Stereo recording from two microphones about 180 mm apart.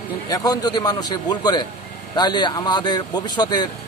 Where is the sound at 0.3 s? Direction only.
20° left (ahead or behind).